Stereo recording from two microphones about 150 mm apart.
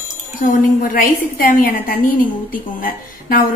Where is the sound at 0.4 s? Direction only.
65° left (ahead or behind).